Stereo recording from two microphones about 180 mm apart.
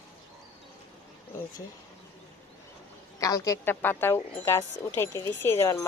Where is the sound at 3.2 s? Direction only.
20° left (ahead or behind).